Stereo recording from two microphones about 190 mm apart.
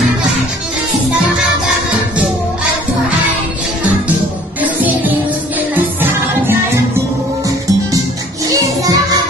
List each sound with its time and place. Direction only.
4.6 s music: 10° right (ahead or behind)
8.5 s music: 20° right (ahead or behind)